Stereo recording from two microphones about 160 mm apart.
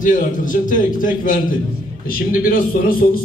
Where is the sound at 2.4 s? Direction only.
65° left (ahead or behind).